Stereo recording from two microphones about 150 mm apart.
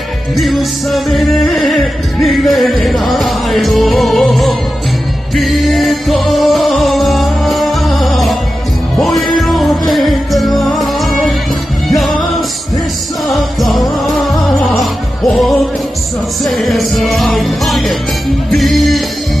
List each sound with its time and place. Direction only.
0.4 s music: centre (ahead or behind)